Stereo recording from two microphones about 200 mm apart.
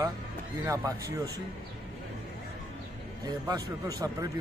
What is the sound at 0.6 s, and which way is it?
Speech, 15° right (ahead or behind).